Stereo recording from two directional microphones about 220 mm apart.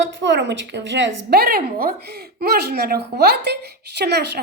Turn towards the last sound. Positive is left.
turn(degrees=-50)  # may be behind; listen again after turning